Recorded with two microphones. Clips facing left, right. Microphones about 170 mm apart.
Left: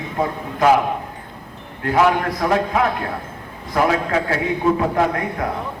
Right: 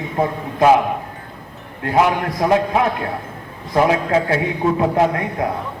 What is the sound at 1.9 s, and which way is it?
A man's voice, 20° right (ahead or behind).